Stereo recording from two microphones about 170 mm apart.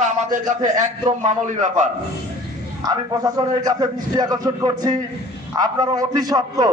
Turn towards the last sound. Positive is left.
turn(degrees=-20)  # may be behind; listen again after turning